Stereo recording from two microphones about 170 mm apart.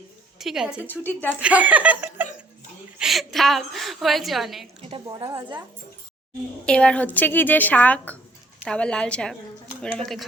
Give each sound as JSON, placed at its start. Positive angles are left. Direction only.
{"t": 0.3, "sound": "a woman's voice", "side_deg": 0}
{"t": 0.9, "sound": "a woman's voice", "side_deg": 10}
{"t": 1.4, "sound": "a woman's voice", "side_deg": -10}
{"t": 4.8, "sound": "a woman's voice", "side_deg": -35}
{"t": 6.7, "sound": "a woman's voice", "side_deg": 5}